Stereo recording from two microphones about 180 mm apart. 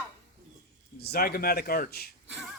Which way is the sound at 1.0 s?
60° left (ahead or behind).